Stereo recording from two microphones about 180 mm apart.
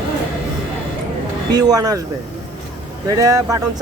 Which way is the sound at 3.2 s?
20° right (ahead or behind).